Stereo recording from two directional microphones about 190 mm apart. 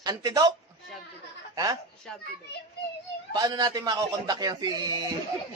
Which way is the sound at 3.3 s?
20° right (ahead or behind).